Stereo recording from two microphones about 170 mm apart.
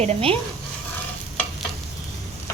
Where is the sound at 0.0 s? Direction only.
35° right (ahead or behind).